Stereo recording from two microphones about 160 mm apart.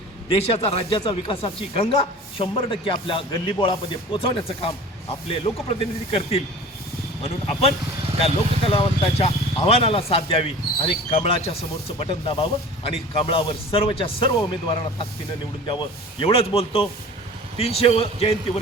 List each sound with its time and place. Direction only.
0.3 s speech: 40° left (ahead or behind)
16.2 s speech: 35° left (ahead or behind)